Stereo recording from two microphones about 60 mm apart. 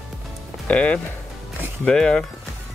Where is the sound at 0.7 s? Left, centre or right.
Left.